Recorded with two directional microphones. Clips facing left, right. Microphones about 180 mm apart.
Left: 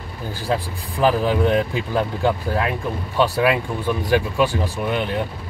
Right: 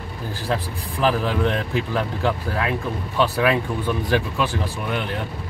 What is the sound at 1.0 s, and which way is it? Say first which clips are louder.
Speech: left 3 dB; 15° left (ahead or behind).